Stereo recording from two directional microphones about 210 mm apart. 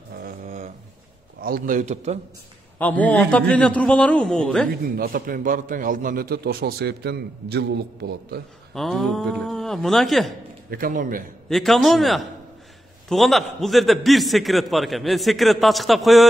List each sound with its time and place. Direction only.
0.1 s a sound: 40° right (ahead or behind)
1.4 s a man's voice: 40° right (ahead or behind)
2.8 s a man's voice: 5° left (ahead or behind)
4.8 s a man's voice: 45° right (ahead or behind)
8.7 s a man's voice: centre (ahead or behind)
10.7 s a man's voice: 40° right (ahead or behind)
11.4 s a man's voice: centre (ahead or behind)